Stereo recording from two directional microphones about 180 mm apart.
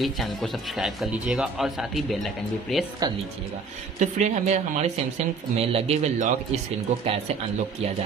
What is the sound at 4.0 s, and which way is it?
Speech, 40° right (ahead or behind).